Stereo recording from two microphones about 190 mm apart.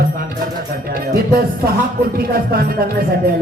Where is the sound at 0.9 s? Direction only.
50° right (ahead or behind).